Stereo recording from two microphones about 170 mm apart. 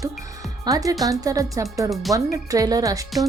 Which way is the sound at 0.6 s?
20° right (ahead or behind).